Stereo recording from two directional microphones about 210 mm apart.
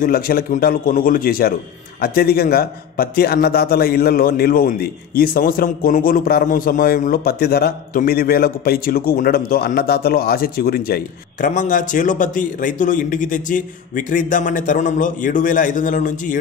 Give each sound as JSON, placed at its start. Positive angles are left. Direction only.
{"t": 0.0, "sound": "a man's voice", "side_deg": 45}